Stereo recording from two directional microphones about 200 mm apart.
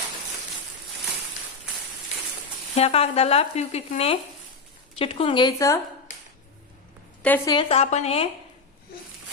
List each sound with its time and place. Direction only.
2.7 s a woman's voice: 30° left (ahead or behind)
7.2 s a woman's voice: 10° left (ahead or behind)
7.5 s speech: 25° left (ahead or behind)
8.9 s a sound: 50° left (ahead or behind)